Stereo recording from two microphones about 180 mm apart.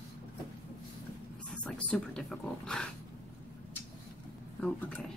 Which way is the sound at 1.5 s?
5° left (ahead or behind).